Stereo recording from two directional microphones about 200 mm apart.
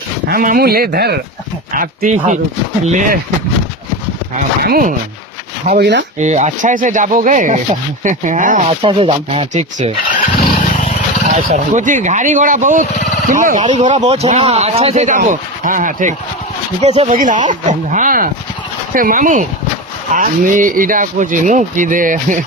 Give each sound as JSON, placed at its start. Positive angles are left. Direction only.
{"t": 0.3, "sound": "speech", "side_deg": -45}
{"t": 4.6, "sound": "speech", "side_deg": -45}
{"t": 6.1, "sound": "speech", "side_deg": -35}
{"t": 10.4, "sound": "vehicle", "side_deg": 40}
{"t": 11.5, "sound": "speech", "side_deg": -40}